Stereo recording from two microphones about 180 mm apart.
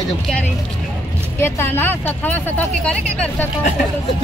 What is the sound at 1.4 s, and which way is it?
Speech, 10° left (ahead or behind).